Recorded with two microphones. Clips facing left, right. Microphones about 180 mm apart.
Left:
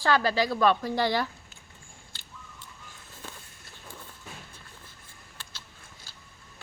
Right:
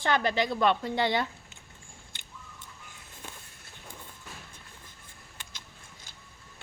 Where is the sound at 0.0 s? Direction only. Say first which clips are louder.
Left 2 dB; 20° right (ahead or behind).